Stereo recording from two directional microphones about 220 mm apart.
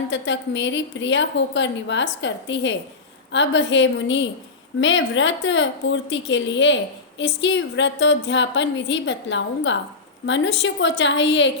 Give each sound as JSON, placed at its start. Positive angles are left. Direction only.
{"t": 0.1, "sound": "a woman's voice", "side_deg": 55}